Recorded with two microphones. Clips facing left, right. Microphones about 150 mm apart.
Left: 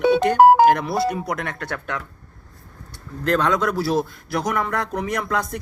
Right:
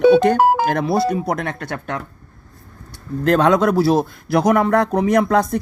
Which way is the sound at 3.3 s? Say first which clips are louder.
Right 6 dB; 50° right (ahead or behind).